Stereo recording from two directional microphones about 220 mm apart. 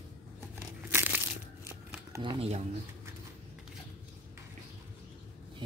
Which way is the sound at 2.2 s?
25° right (ahead or behind).